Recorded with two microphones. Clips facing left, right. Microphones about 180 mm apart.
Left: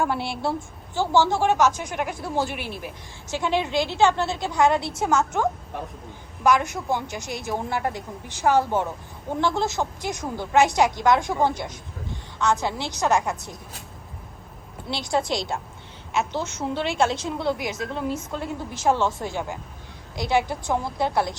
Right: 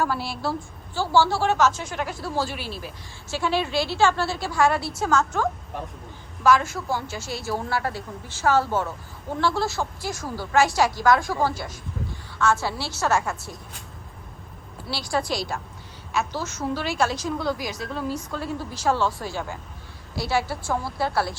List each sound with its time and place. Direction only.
0.0 s a woman's voice: 25° left (ahead or behind)
14.8 s a woman's voice: 20° left (ahead or behind)